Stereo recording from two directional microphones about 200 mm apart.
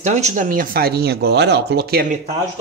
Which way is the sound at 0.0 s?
35° right (ahead or behind).